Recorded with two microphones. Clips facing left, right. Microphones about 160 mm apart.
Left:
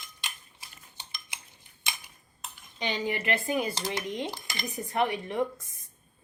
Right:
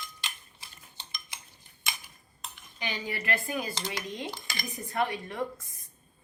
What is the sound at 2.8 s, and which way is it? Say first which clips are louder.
A woman's voice: left 5 dB; 20° left (ahead or behind).